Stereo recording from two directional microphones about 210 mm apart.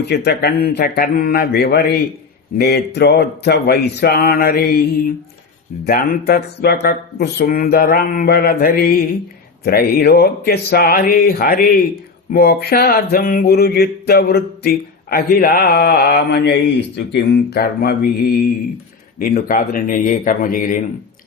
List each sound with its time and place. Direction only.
0.0 s mantra: 50° left (ahead or behind)
19.2 s speech: 40° left (ahead or behind)